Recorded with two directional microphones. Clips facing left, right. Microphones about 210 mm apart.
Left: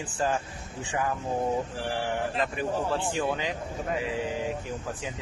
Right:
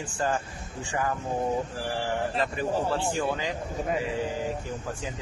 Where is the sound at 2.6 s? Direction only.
Centre (ahead or behind).